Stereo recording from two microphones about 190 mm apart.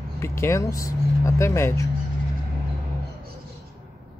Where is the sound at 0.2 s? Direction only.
15° left (ahead or behind).